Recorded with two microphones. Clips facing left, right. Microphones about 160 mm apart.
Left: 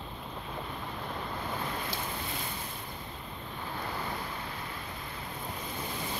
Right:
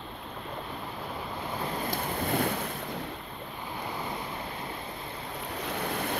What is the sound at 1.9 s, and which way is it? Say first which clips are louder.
Boat: right 7 dB; 60° right (ahead or behind).